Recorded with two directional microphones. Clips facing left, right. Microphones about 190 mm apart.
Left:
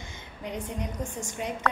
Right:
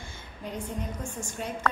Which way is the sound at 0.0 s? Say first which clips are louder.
Left 1 dB; 15° left (ahead or behind).